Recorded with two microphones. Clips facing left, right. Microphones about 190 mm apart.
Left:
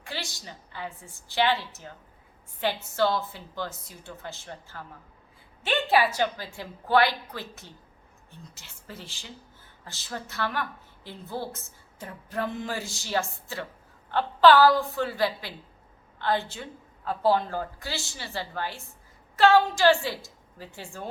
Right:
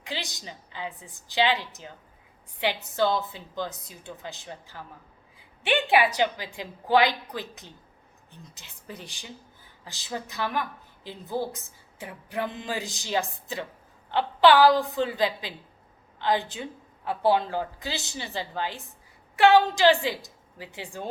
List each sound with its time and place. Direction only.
0.0 s a woman's voice: 20° right (ahead or behind)